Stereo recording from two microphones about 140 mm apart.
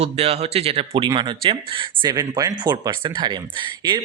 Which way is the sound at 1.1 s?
35° right (ahead or behind).